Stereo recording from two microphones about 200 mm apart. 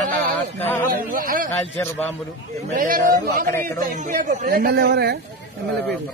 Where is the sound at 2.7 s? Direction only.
45° right (ahead or behind).